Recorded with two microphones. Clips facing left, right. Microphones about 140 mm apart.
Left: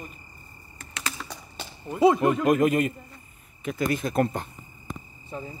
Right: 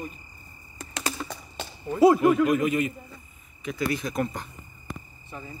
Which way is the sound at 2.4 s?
45° left (ahead or behind).